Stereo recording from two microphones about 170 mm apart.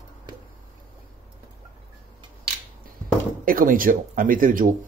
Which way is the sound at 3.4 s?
55° right (ahead or behind).